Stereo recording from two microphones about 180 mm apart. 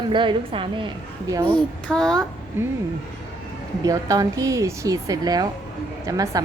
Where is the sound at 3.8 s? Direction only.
20° right (ahead or behind).